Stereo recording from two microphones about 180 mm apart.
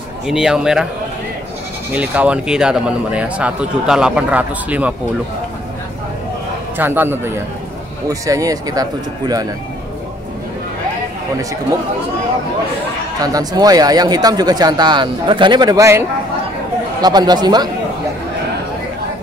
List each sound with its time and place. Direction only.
0.3 s a man's voice: 5° right (ahead or behind)
1.9 s speech: 10° right (ahead or behind)
6.8 s speech: 10° right (ahead or behind)
13.2 s speech: 20° right (ahead or behind)
17.0 s speech: 20° right (ahead or behind)